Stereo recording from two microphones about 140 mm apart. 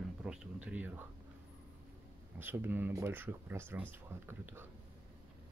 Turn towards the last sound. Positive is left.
turn(degrees=-15)  # may be behind; listen again after turning